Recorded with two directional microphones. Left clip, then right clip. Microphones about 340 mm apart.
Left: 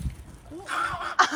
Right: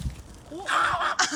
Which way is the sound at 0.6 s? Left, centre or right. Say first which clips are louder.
Right 5 dB; right.